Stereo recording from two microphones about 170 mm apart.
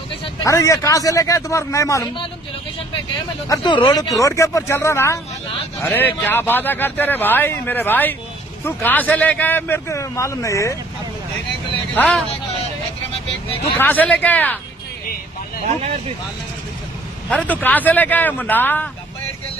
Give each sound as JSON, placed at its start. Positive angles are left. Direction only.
{"t": 0.2, "sound": "speech", "side_deg": 20}
{"t": 3.4, "sound": "a man's voice", "side_deg": 25}
{"t": 11.9, "sound": "a man's voice", "side_deg": 5}
{"t": 13.7, "sound": "a man's voice", "side_deg": 10}
{"t": 17.3, "sound": "a man's voice", "side_deg": 5}